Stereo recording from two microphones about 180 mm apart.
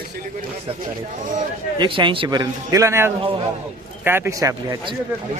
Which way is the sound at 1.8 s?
25° right (ahead or behind).